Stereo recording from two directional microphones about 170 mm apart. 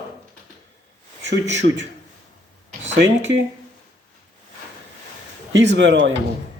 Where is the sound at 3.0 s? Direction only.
90° right.